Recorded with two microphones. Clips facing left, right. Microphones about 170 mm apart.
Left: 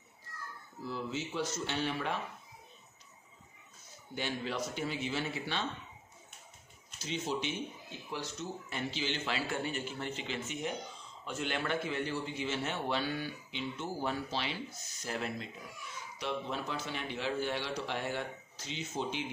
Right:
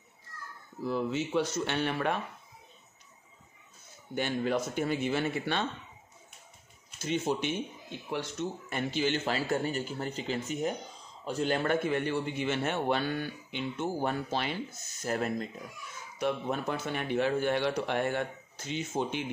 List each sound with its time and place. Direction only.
0.8 s speech: 60° right (ahead or behind)
4.1 s a man's voice: 50° right (ahead or behind)
7.0 s a man's voice: 55° right (ahead or behind)